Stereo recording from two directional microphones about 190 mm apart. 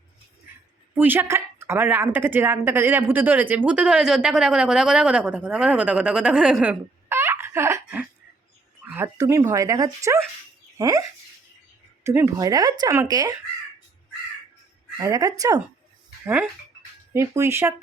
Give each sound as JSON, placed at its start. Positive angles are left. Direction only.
{"t": 0.9, "sound": "a woman's voice", "side_deg": -10}
{"t": 12.0, "sound": "speech", "side_deg": -15}
{"t": 14.9, "sound": "a woman's voice", "side_deg": -15}